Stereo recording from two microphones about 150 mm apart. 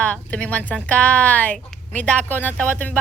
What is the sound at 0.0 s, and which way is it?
A woman's voice, 10° left (ahead or behind).